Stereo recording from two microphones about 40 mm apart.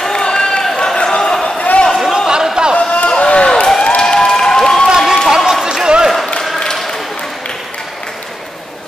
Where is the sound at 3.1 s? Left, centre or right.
Left.